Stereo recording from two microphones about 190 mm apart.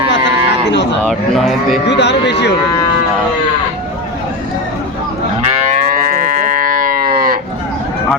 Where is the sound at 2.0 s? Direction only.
65° left (ahead or behind).